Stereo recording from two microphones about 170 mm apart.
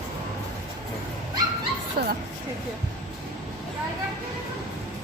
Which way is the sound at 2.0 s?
65° right (ahead or behind).